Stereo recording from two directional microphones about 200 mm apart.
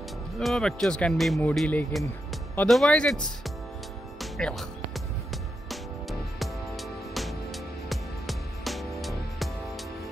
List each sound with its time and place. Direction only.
0.4 s speech: centre (ahead or behind)
4.2 s music: centre (ahead or behind)